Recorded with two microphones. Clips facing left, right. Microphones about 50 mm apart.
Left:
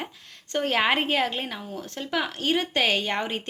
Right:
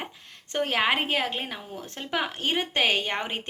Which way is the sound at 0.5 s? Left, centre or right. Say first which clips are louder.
Left 1 dB; centre.